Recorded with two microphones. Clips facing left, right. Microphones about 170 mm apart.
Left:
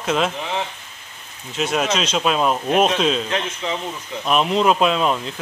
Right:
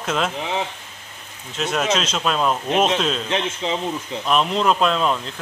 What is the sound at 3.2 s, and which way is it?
Speech, 25° right (ahead or behind).